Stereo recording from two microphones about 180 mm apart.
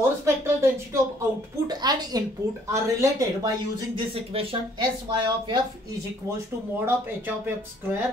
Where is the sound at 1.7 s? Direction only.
20° right (ahead or behind).